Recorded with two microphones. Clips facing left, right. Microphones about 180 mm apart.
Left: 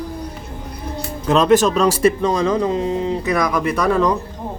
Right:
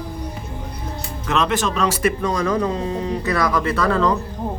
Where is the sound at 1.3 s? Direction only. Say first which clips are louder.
Left 7 dB; 40° left (ahead or behind); by 4.2 s 15° left (ahead or behind).